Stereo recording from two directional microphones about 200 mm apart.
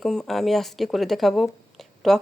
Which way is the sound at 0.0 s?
Centre (ahead or behind).